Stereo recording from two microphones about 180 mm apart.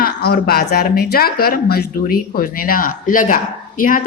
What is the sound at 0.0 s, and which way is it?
A woman's voice, 60° left (ahead or behind).